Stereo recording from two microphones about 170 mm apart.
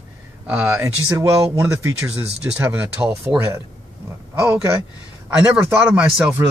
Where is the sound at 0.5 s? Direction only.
15° right (ahead or behind).